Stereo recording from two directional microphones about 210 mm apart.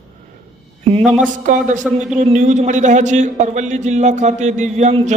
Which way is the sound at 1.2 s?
40° right (ahead or behind).